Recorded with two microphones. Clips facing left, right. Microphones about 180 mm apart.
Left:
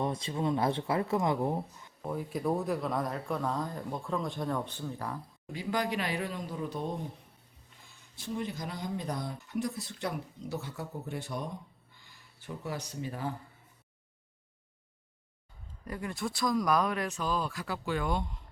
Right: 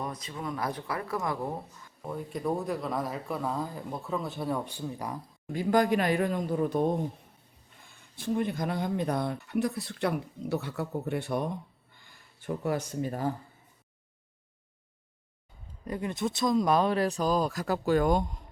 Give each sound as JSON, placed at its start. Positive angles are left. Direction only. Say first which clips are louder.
{"t": 0.0, "sound": "speech", "louder": "left 4 dB", "side_deg": 30}
{"t": 2.0, "sound": "speech", "louder": "left 1 dB", "side_deg": 5}
{"t": 5.5, "sound": "speech", "louder": "right 8 dB", "side_deg": -50}
{"t": 15.8, "sound": "speech", "louder": "right 5 dB", "side_deg": -20}